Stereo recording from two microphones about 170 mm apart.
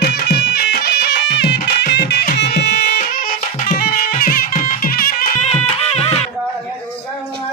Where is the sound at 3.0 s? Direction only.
60° left (ahead or behind).